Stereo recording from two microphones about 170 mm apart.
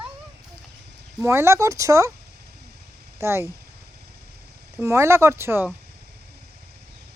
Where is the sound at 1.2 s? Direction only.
15° right (ahead or behind).